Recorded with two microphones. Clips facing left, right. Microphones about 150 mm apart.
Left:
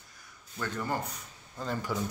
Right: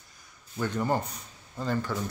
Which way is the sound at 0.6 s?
20° right (ahead or behind).